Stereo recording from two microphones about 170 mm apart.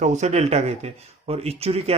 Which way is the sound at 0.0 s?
45° right (ahead or behind).